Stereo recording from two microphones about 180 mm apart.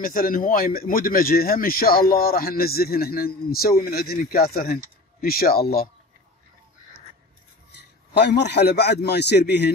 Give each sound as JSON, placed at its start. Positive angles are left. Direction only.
{"t": 0.0, "sound": "speech", "side_deg": 55}
{"t": 7.7, "sound": "a man's voice", "side_deg": 65}